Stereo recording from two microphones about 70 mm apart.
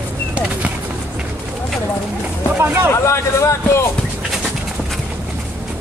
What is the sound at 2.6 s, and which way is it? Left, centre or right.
Speech, right.